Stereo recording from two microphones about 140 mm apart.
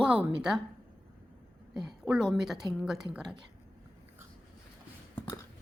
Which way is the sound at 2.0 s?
5° right (ahead or behind).